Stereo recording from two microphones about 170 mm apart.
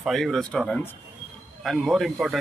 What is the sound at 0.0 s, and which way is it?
Speech, centre (ahead or behind).